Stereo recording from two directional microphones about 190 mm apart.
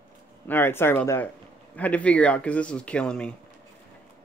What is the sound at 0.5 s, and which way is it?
Speech, 10° left (ahead or behind).